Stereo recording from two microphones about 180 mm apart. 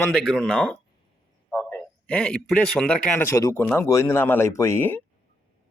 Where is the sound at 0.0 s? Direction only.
5° left (ahead or behind).